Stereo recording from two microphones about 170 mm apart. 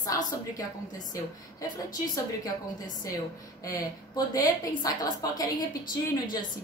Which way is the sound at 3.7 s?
20° left (ahead or behind).